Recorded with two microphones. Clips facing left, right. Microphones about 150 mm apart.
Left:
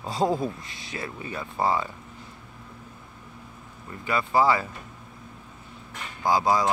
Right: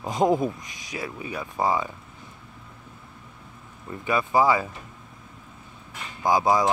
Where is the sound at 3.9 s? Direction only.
20° right (ahead or behind).